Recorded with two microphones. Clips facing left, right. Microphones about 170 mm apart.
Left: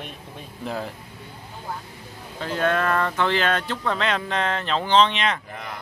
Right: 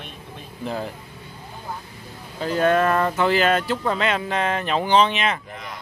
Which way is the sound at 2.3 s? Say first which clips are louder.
Right 4 dB; 5° right (ahead or behind).